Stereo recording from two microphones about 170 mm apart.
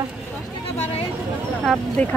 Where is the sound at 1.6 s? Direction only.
Centre (ahead or behind).